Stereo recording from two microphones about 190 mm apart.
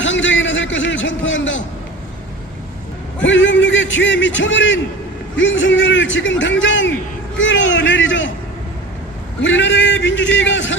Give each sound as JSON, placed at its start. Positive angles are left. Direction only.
{"t": 0.0, "sound": "a man's voice", "side_deg": 80}
{"t": 3.2, "sound": "a man's voice", "side_deg": 75}
{"t": 9.4, "sound": "a man's voice", "side_deg": 75}